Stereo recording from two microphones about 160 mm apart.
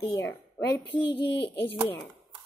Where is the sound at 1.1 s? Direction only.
90° left.